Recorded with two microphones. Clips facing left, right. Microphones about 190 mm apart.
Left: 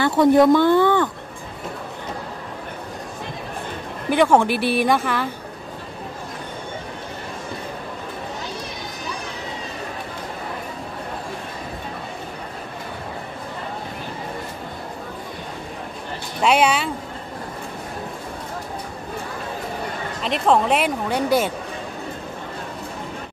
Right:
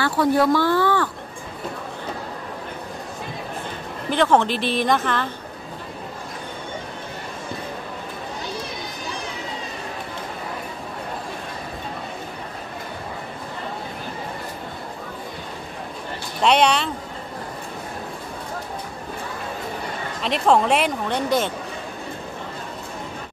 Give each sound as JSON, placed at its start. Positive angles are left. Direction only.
{"t": 0.0, "sound": "speech", "side_deg": 20}
{"t": 4.1, "sound": "speech", "side_deg": 10}
{"t": 16.3, "sound": "speech", "side_deg": 5}
{"t": 20.2, "sound": "speech", "side_deg": 0}